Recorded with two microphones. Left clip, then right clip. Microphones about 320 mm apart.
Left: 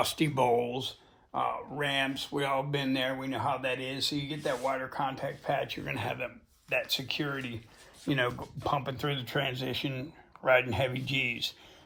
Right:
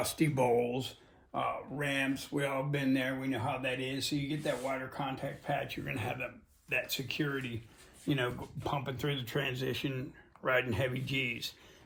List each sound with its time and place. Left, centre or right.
0.2 s speech: centre
3.6 s speech: centre
4.4 s speech: centre